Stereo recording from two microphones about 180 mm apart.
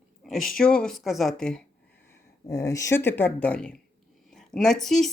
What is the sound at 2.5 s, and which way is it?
Speech, 15° left (ahead or behind).